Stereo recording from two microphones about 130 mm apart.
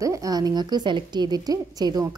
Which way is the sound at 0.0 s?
25° right (ahead or behind).